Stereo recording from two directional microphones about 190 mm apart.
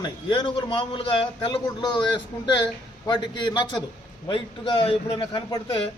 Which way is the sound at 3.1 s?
25° left (ahead or behind).